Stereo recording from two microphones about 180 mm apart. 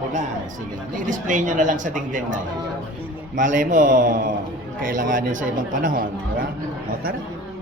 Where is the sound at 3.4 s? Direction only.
45° right (ahead or behind).